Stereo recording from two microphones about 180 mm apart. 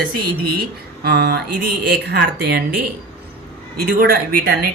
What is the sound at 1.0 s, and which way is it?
Speech, 60° right (ahead or behind).